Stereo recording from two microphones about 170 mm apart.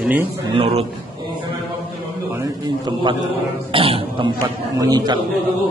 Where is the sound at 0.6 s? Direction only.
35° right (ahead or behind).